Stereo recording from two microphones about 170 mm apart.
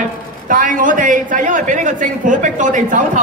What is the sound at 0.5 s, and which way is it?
A man's voice, 50° right (ahead or behind).